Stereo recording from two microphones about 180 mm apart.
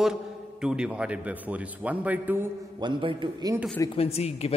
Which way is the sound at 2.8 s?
25° right (ahead or behind).